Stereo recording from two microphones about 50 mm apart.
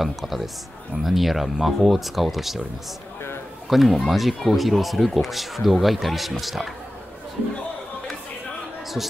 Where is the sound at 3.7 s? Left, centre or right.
Centre.